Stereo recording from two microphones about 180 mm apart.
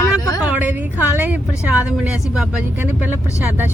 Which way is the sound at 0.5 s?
10° right (ahead or behind).